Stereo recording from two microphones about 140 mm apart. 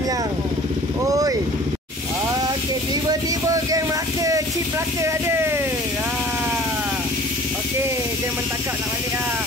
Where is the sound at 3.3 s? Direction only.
25° right (ahead or behind).